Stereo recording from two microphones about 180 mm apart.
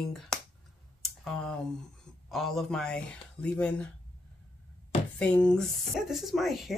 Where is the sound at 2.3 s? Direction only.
Centre (ahead or behind).